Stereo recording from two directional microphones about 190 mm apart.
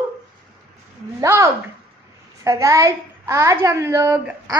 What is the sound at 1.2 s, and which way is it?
A child's voice, 15° right (ahead or behind).